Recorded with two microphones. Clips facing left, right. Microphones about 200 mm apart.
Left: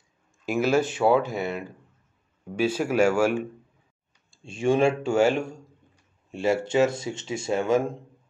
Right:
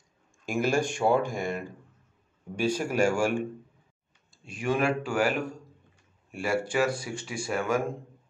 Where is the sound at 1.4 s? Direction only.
45° right (ahead or behind).